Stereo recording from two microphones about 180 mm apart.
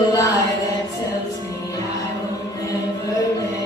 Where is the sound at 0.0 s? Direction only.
20° left (ahead or behind).